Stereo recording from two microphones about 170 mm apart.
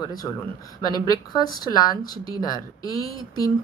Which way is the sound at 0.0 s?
20° left (ahead or behind).